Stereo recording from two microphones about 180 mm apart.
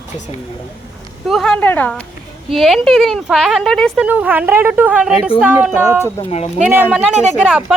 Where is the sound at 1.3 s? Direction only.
5° left (ahead or behind).